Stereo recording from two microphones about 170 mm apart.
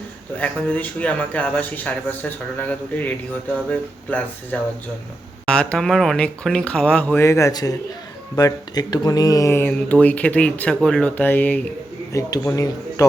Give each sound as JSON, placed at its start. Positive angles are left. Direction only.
{"t": 0.3, "sound": "speech", "side_deg": 10}